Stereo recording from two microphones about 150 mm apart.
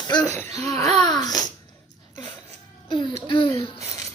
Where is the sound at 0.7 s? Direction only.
45° right (ahead or behind).